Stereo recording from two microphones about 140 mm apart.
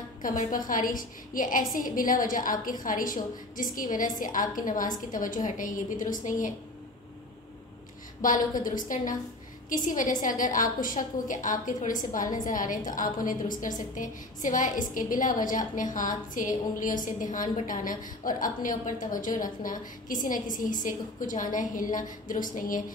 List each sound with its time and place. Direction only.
0.2 s a woman's voice: 75° left (ahead or behind)
8.2 s a woman's voice: 75° left (ahead or behind)